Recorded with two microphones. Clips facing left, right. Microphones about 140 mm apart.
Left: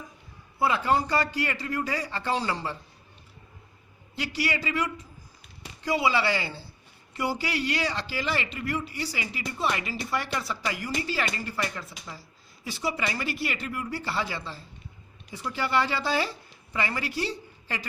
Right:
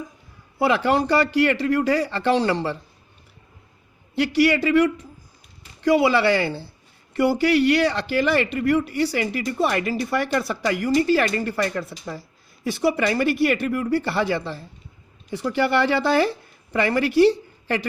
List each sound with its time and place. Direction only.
0.6 s speech: 80° right
4.1 s a woman's voice: 65° right (ahead or behind)